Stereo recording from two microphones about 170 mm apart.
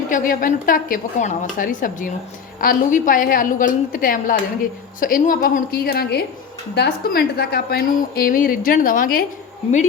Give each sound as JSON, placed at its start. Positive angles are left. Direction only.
{"t": 0.1, "sound": "a woman's voice", "side_deg": 50}